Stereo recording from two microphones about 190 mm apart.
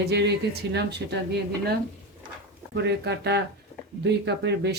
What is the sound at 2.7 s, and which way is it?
Speech, 60° right (ahead or behind).